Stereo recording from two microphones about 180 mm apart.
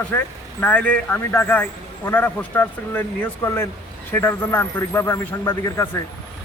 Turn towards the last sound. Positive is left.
turn(degrees=15)  # may be behind; listen again after turning